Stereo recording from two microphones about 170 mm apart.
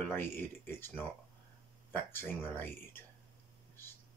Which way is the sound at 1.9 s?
15° left (ahead or behind).